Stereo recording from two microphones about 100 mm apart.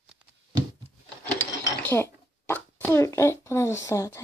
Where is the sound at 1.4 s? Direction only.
25° left (ahead or behind).